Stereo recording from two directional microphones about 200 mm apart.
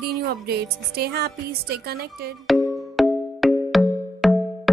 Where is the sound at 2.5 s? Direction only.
Centre (ahead or behind).